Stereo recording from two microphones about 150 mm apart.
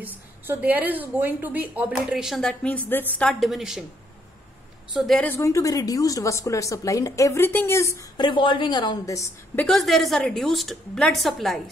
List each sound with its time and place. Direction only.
0.5 s a woman's voice: 10° right (ahead or behind)
4.9 s a woman's voice: centre (ahead or behind)
5.2 s a woman's voice: 15° left (ahead or behind)
8.2 s a woman's voice: 30° left (ahead or behind)
9.7 s a woman's voice: centre (ahead or behind)